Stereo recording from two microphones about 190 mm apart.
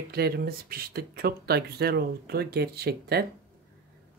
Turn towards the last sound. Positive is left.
turn(degrees=-55)  # may be behind; listen again after turning